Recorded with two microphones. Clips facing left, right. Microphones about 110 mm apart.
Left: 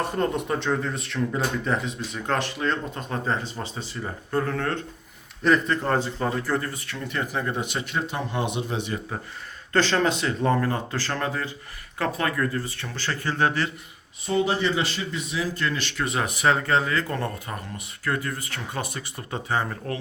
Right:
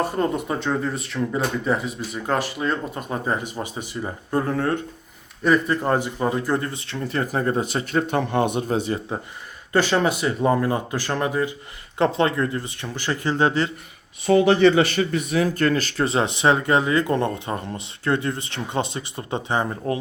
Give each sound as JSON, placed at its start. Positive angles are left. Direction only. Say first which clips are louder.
{"t": 0.0, "sound": "speech", "louder": "right 3 dB", "side_deg": 0}
{"t": 8.0, "sound": "speech", "louder": "right 7 dB", "side_deg": -55}
{"t": 9.7, "sound": "speech", "louder": "right 2 dB", "side_deg": -10}
{"t": 14.3, "sound": "speech", "louder": "right 8 dB", "side_deg": -75}